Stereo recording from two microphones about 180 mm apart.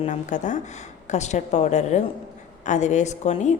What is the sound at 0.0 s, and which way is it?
A woman's voice, 45° left (ahead or behind).